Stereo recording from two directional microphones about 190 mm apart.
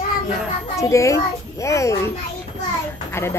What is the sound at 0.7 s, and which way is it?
A woman's voice, 15° left (ahead or behind).